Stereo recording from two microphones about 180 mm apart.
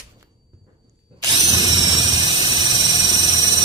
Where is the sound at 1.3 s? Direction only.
25° right (ahead or behind).